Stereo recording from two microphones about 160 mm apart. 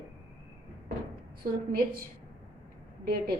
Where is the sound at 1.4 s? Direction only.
65° right (ahead or behind).